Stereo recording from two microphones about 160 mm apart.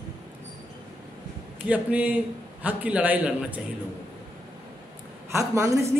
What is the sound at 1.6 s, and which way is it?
Speech, 10° right (ahead or behind).